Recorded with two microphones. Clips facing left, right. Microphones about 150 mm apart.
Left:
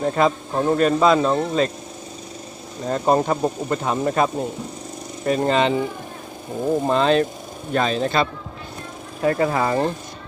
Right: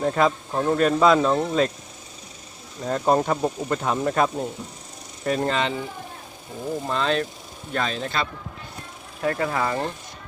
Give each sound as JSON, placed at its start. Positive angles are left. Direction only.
{"t": 0.0, "sound": "speech", "side_deg": 5}
{"t": 0.8, "sound": "speech", "side_deg": 0}
{"t": 2.8, "sound": "speech", "side_deg": 5}
{"t": 5.5, "sound": "speech", "side_deg": 20}
{"t": 6.8, "sound": "speech", "side_deg": 30}
{"t": 9.2, "sound": "speech", "side_deg": 10}